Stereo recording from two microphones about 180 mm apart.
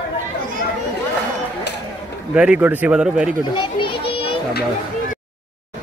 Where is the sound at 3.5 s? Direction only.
25° left (ahead or behind).